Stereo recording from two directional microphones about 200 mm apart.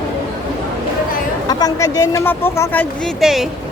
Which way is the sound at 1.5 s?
20° left (ahead or behind).